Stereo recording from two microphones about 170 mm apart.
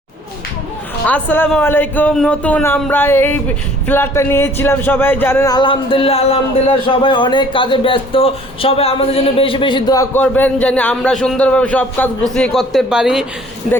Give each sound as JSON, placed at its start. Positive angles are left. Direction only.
{"t": 1.0, "sound": "a man's voice", "side_deg": 10}